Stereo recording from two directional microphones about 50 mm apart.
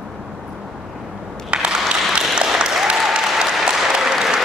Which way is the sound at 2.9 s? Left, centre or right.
Centre.